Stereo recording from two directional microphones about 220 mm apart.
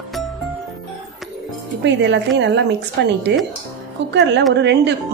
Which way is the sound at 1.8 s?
55° right (ahead or behind).